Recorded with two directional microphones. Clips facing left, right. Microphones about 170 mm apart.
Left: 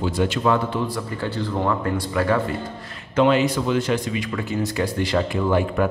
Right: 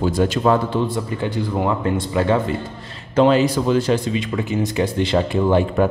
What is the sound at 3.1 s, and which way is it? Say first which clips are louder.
Speech: right 3 dB; 35° right (ahead or behind).